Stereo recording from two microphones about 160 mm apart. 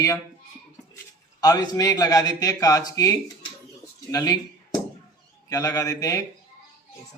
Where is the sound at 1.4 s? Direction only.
25° left (ahead or behind).